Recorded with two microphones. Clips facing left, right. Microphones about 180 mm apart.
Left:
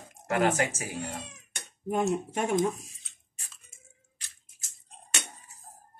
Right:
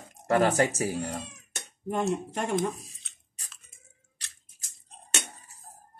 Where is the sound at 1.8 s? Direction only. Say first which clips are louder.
Left 1 dB; 5° left (ahead or behind).